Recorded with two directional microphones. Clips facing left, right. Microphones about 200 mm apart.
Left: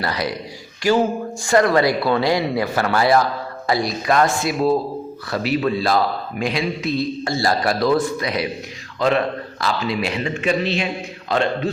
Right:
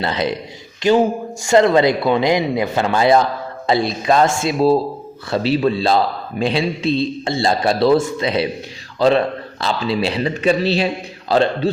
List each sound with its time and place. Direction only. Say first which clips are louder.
0.0 s a man's voice: right 3 dB; 25° right (ahead or behind)